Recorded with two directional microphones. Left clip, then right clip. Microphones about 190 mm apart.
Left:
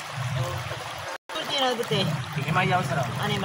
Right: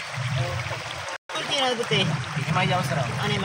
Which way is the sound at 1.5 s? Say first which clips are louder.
Right 2 dB; 10° right (ahead or behind).